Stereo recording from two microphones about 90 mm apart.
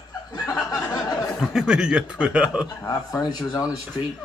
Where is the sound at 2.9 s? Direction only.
45° left (ahead or behind).